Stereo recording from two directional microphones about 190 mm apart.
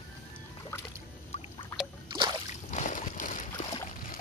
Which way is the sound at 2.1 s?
25° right (ahead or behind).